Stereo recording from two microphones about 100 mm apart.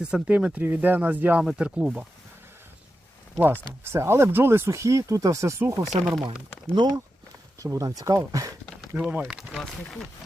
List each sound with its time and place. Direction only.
0.0 s speech: 10° right (ahead or behind)
3.8 s speech: 25° right (ahead or behind)
6.7 s speech: 55° right (ahead or behind)
7.6 s speech: 35° right (ahead or behind)
9.0 s speech: 10° right (ahead or behind)